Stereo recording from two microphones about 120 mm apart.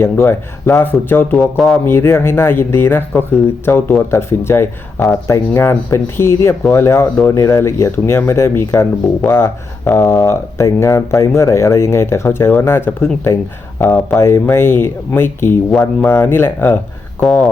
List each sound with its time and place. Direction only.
0.0 s speech: 20° left (ahead or behind)
1.5 s speech: centre (ahead or behind)
1.8 s speech: 20° left (ahead or behind)
17.2 s speech: centre (ahead or behind)